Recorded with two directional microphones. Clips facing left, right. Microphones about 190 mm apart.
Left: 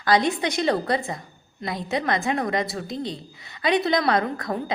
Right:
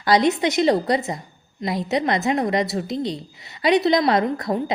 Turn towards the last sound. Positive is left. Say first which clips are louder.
# right 4 dB
turn(degrees=-20)  # may be behind; listen again after turning